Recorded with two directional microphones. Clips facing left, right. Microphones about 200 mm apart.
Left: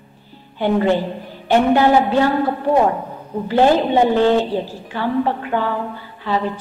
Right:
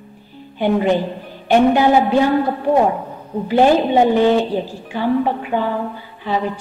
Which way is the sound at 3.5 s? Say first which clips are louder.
Right 1 dB; 15° right (ahead or behind).